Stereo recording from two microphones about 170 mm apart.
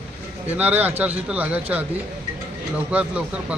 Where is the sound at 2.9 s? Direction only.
5° right (ahead or behind).